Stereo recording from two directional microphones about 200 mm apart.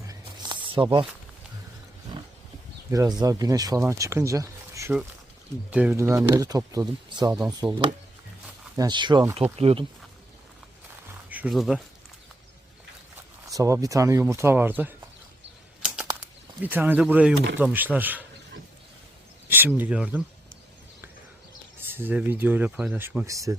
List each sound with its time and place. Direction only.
0.1 s a sound: 20° right (ahead or behind)
2.9 s speech: 20° right (ahead or behind)
11.3 s speech: 5° right (ahead or behind)
13.5 s speech: 15° right (ahead or behind)
16.6 s speech: 10° right (ahead or behind)
19.5 s speech: 10° right (ahead or behind)
21.8 s speech: 10° right (ahead or behind)